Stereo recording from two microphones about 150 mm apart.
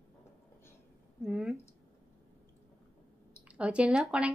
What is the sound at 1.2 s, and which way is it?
Speech, centre (ahead or behind).